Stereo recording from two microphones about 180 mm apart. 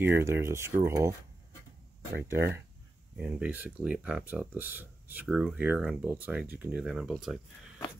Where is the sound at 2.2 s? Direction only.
15° right (ahead or behind).